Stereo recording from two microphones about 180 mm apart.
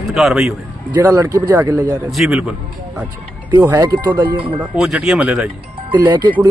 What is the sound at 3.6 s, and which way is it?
Speech, 20° right (ahead or behind).